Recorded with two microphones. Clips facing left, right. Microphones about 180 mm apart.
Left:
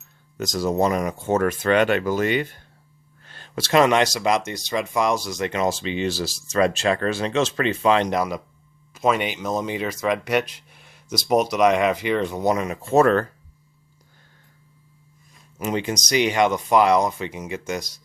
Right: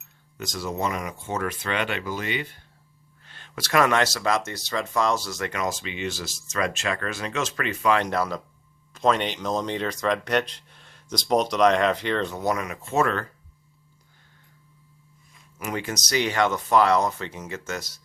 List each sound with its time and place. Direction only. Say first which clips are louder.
0.3 s speech: left 8 dB; 40° left (ahead or behind)
15.5 s speech: left 5 dB; 20° left (ahead or behind)